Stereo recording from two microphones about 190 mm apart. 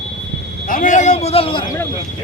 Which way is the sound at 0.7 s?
40° left (ahead or behind).